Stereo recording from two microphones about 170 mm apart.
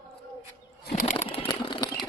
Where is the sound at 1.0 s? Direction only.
45° left (ahead or behind).